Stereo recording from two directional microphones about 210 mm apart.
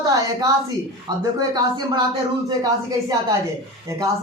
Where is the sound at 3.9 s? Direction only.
15° right (ahead or behind).